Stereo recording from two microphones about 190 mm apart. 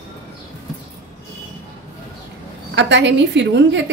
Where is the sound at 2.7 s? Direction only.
70° right (ahead or behind).